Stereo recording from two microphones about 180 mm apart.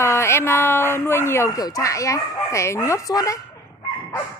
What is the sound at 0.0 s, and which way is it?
Speech, 15° left (ahead or behind).